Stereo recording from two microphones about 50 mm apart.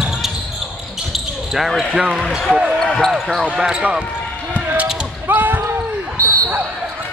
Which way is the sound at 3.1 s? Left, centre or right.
Centre.